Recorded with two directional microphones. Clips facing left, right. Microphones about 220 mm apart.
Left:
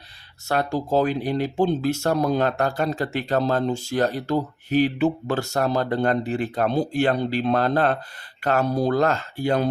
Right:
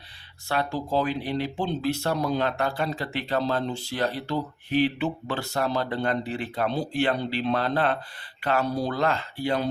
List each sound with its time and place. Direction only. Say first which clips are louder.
0.4 s speech: left 4 dB; 45° left (ahead or behind)